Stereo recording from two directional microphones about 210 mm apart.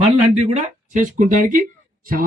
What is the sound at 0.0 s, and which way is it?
A man's voice, 30° right (ahead or behind).